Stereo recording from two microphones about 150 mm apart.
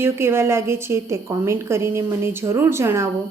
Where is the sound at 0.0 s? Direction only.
15° right (ahead or behind).